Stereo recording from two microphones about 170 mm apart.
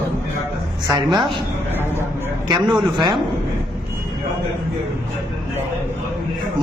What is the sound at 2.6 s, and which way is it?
Speech, centre (ahead or behind).